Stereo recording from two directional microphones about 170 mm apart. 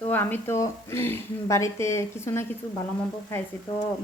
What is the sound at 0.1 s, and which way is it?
Speech, 10° left (ahead or behind).